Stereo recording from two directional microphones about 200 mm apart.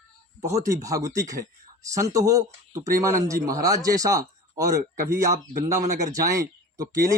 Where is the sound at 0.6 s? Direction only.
15° right (ahead or behind).